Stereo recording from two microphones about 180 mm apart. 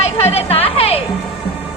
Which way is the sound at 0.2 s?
35° left (ahead or behind).